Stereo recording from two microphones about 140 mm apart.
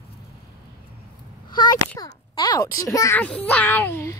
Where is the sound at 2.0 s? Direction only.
30° left (ahead or behind).